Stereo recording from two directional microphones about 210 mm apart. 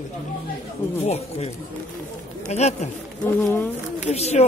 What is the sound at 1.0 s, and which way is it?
Speech, 30° left (ahead or behind).